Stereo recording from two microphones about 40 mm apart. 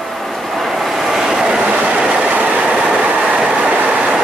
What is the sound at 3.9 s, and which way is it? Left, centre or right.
Train, right.